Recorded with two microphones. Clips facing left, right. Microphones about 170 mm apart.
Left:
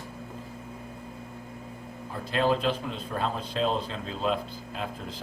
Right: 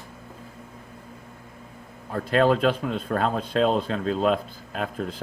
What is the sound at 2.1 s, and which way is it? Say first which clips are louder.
Speech: right 6 dB; 55° right (ahead or behind).